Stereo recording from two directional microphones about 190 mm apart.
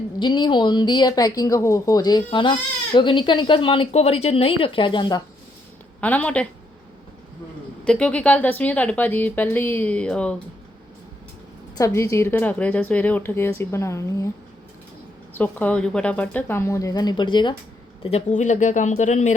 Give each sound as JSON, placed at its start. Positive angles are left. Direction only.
{"t": 0.2, "sound": "speech", "side_deg": 25}
{"t": 6.0, "sound": "speech", "side_deg": 10}
{"t": 7.9, "sound": "speech", "side_deg": 5}
{"t": 11.8, "sound": "speech", "side_deg": 15}
{"t": 15.3, "sound": "speech", "side_deg": 10}
{"t": 18.0, "sound": "speech", "side_deg": 35}